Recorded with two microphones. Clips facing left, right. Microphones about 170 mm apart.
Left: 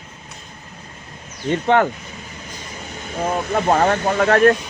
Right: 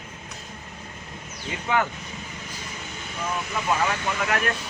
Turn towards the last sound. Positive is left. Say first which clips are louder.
# left 12 dB
turn(degrees=50)  # may be behind; listen again after turning